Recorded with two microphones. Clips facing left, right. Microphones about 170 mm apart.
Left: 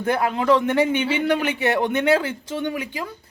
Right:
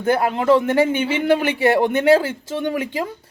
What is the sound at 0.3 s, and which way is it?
Speech, 5° right (ahead or behind).